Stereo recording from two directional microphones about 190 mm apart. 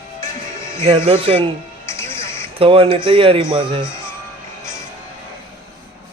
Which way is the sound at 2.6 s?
30° right (ahead or behind).